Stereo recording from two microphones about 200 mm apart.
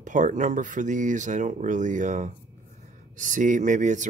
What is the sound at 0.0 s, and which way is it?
Speech, 40° right (ahead or behind).